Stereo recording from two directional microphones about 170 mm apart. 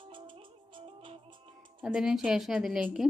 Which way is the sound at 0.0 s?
30° right (ahead or behind).